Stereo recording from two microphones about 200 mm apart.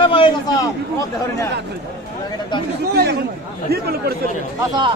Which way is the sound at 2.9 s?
55° right (ahead or behind).